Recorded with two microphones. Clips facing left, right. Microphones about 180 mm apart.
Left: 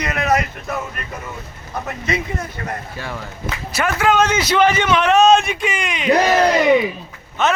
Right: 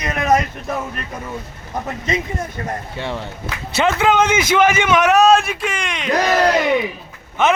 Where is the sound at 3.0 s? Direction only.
25° right (ahead or behind).